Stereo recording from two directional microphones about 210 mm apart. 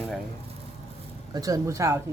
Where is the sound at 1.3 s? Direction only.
15° right (ahead or behind).